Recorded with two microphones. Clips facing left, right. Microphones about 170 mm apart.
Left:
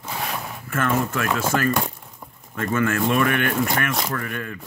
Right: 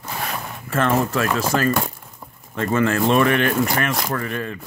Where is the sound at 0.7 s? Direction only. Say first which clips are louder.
Right 3 dB; 30° right (ahead or behind).